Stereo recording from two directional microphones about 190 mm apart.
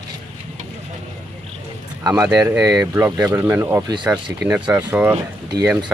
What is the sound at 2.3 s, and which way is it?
Speech, centre (ahead or behind).